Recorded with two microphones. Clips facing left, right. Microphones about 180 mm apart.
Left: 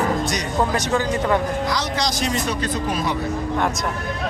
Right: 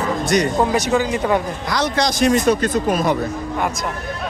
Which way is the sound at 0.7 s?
10° right (ahead or behind).